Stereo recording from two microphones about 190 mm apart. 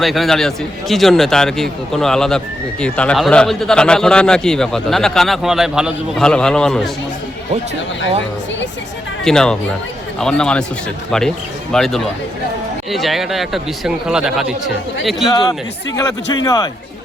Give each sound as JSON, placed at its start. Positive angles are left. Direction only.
{"t": 0.0, "sound": "a man's voice", "side_deg": 0}
{"t": 9.2, "sound": "a man's voice", "side_deg": 5}
{"t": 11.7, "sound": "a man's voice", "side_deg": 0}
{"t": 15.3, "sound": "a man's voice", "side_deg": 20}